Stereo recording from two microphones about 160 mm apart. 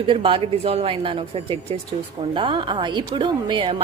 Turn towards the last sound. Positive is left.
turn(degrees=-30)  # may be behind; listen again after turning